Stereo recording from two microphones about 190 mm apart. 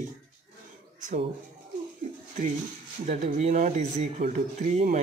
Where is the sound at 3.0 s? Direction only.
40° right (ahead or behind).